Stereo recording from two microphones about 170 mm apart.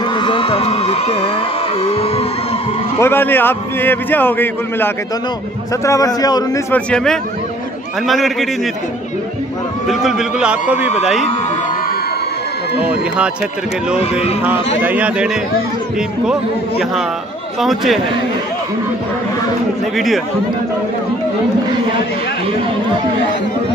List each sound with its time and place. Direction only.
0.0 s speech: 25° left (ahead or behind)
3.0 s a man's voice: 15° left (ahead or behind)
6.7 s a man's voice: 5° left (ahead or behind)
9.8 s a man's voice: centre (ahead or behind)
14.8 s a man's voice: 10° right (ahead or behind)
17.6 s a man's voice: centre (ahead or behind)